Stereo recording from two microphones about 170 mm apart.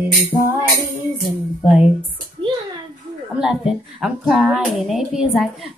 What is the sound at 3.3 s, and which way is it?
Speech, 5° right (ahead or behind).